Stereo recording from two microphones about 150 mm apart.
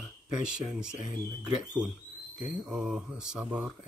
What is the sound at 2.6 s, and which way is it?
Speech, 5° right (ahead or behind).